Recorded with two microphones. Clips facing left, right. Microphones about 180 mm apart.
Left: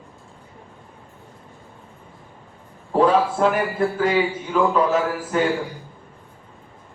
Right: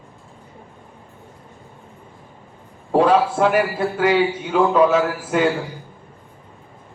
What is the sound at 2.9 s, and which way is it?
A man's voice, 80° right.